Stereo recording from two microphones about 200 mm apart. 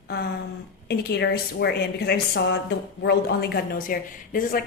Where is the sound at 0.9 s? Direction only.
55° left (ahead or behind).